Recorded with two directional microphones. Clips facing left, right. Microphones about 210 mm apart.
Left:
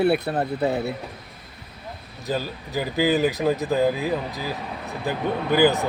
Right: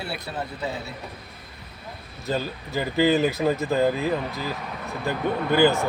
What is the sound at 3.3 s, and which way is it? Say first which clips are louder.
Speech: left 1 dB; 15° left (ahead or behind).